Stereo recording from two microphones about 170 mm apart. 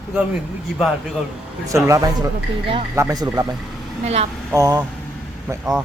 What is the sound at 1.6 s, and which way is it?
A man's voice, 20° right (ahead or behind).